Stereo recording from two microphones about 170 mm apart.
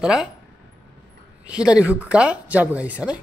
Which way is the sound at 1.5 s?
5° right (ahead or behind).